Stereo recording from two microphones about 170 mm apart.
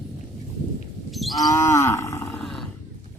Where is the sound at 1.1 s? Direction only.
Centre (ahead or behind).